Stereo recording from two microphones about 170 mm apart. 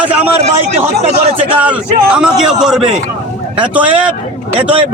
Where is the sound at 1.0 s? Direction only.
40° right (ahead or behind).